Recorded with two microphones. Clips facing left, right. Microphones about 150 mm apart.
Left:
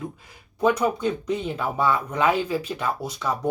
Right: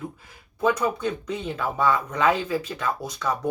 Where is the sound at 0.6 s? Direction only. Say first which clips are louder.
Left 2 dB; 10° left (ahead or behind).